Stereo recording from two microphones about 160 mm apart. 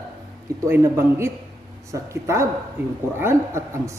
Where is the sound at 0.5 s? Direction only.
15° right (ahead or behind).